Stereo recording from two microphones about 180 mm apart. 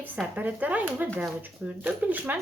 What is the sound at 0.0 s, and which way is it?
Speech, 10° right (ahead or behind).